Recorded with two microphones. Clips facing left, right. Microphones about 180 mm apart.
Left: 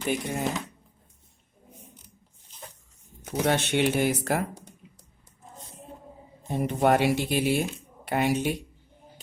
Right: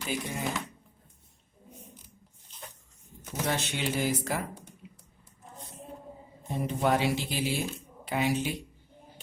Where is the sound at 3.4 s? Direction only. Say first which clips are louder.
Left 7 dB; 65° left (ahead or behind).